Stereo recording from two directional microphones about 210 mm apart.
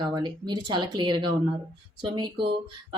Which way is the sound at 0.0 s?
20° right (ahead or behind).